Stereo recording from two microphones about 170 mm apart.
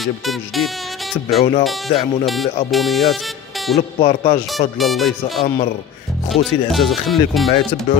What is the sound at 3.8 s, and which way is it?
Speech, 35° left (ahead or behind).